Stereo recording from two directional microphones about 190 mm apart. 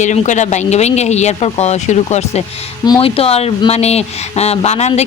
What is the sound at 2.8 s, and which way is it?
Speech, 25° left (ahead or behind).